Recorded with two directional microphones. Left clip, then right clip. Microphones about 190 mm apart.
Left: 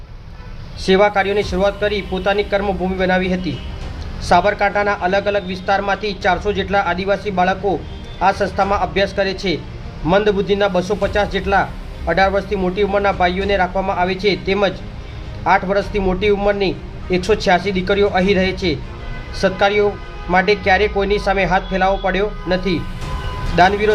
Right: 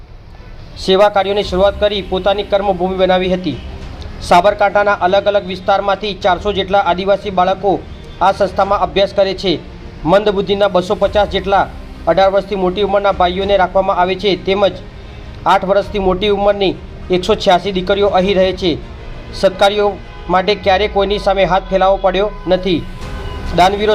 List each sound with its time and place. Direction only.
0.9 s a man's voice: 15° right (ahead or behind)